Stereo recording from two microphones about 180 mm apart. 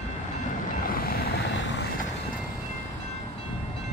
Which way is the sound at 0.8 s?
55° left (ahead or behind).